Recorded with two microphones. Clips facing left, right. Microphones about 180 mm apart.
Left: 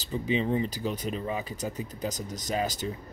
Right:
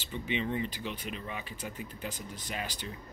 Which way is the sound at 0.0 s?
35° left (ahead or behind).